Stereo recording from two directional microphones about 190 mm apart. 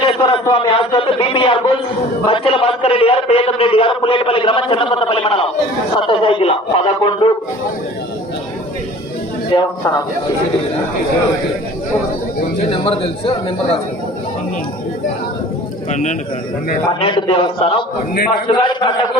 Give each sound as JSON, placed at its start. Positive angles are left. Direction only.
{"t": 0.0, "sound": "a sound", "side_deg": 30}
{"t": 2.2, "sound": "a man's voice", "side_deg": 30}
{"t": 9.5, "sound": "a man's voice", "side_deg": 20}
{"t": 12.7, "sound": "a man's voice", "side_deg": 30}
{"t": 15.9, "sound": "a man's voice", "side_deg": 40}
{"t": 17.0, "sound": "a man's voice", "side_deg": 30}